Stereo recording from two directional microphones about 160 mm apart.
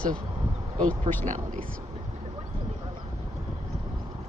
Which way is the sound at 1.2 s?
50° right (ahead or behind).